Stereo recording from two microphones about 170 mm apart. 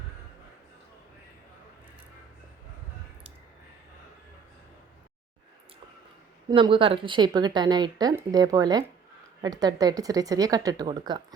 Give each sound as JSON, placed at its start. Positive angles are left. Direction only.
{"t": 6.5, "sound": "a woman's voice", "side_deg": -30}